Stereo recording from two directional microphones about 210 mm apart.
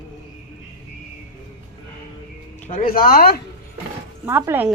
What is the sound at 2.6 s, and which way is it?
Speech, 45° left (ahead or behind).